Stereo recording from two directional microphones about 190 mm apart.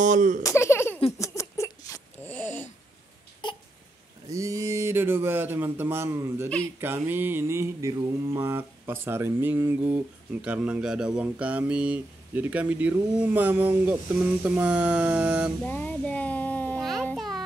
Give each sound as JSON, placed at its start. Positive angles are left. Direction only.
{"t": 0.0, "sound": "speech", "side_deg": -40}
{"t": 0.4, "sound": "a sound", "side_deg": 15}
{"t": 3.4, "sound": "baby cry", "side_deg": 25}
{"t": 4.3, "sound": "speech", "side_deg": -15}
{"t": 15.6, "sound": "babbling", "side_deg": 5}